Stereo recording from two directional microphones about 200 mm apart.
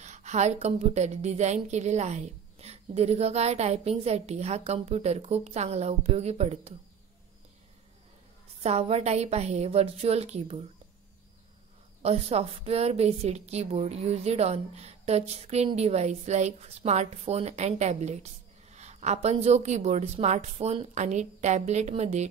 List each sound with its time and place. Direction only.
0.0 s a woman's voice: 35° right (ahead or behind)
8.6 s a woman's voice: 30° right (ahead or behind)
12.0 s a woman's voice: 30° right (ahead or behind)